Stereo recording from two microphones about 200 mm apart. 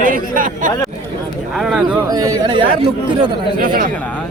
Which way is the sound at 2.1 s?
20° right (ahead or behind).